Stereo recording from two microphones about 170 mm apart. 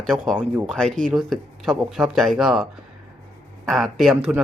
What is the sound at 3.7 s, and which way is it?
Speech, centre (ahead or behind).